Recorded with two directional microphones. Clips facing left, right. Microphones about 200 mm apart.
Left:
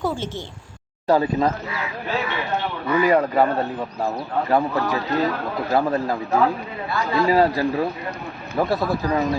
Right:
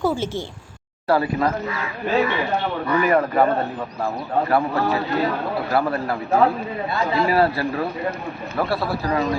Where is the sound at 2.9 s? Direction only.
15° left (ahead or behind).